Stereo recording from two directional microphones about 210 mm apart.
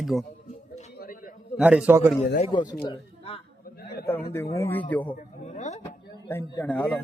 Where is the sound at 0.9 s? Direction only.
45° left (ahead or behind).